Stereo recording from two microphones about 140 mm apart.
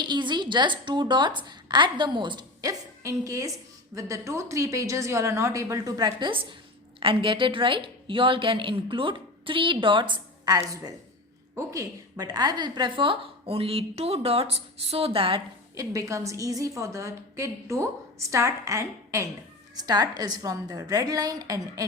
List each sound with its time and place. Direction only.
0.0 s a woman's voice: 35° right (ahead or behind)
15.7 s a woman's voice: 25° right (ahead or behind)